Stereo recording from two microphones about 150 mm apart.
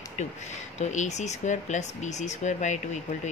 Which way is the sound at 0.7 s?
50° left (ahead or behind).